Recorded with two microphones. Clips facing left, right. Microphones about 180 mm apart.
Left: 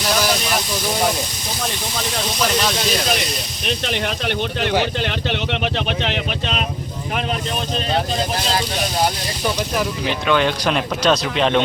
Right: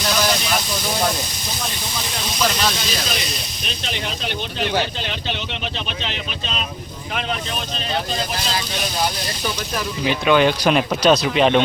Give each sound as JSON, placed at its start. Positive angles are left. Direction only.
{"t": 3.7, "sound": "speech", "side_deg": 60}
{"t": 10.0, "sound": "speech", "side_deg": -5}